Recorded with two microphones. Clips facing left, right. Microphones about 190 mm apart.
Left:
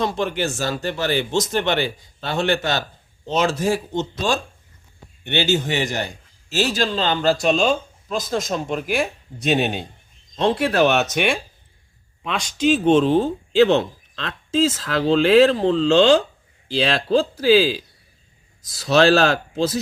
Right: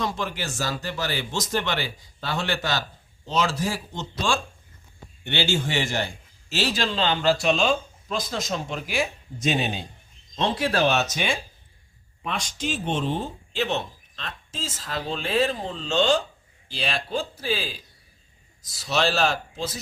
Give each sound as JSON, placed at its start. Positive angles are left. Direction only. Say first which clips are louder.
{"t": 0.0, "sound": "speech", "louder": "left 7 dB", "side_deg": 25}
{"t": 5.3, "sound": "a man's voice", "louder": "left 5 dB", "side_deg": 20}
{"t": 6.5, "sound": "speech", "louder": "left 5 dB", "side_deg": 45}
{"t": 10.3, "sound": "speech", "louder": "left 6 dB", "side_deg": 55}
{"t": 12.2, "sound": "speech", "louder": "left 9 dB", "side_deg": 90}